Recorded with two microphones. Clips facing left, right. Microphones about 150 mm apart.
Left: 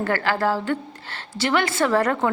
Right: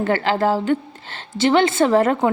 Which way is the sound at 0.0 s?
20° right (ahead or behind).